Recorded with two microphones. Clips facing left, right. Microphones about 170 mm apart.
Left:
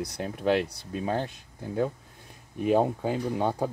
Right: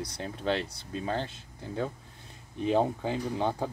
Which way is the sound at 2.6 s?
10° left (ahead or behind).